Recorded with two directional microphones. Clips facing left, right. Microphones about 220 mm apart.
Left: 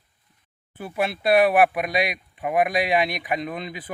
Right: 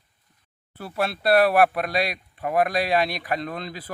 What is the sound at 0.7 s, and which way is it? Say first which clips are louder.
Speech: left 1 dB; 15° left (ahead or behind).